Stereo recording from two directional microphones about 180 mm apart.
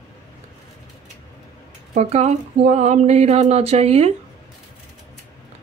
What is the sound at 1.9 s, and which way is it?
Speech, 40° right (ahead or behind).